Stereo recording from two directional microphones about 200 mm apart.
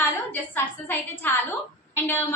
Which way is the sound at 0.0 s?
10° left (ahead or behind).